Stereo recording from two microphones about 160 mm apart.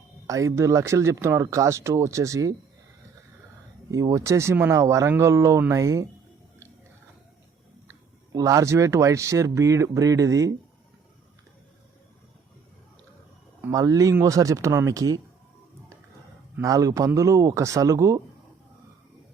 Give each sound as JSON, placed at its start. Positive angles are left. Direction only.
{"t": 0.3, "sound": "speech", "side_deg": -20}
{"t": 3.9, "sound": "speech", "side_deg": -20}
{"t": 7.9, "sound": "speech", "side_deg": -20}
{"t": 13.6, "sound": "speech", "side_deg": -20}
{"t": 16.6, "sound": "speech", "side_deg": -20}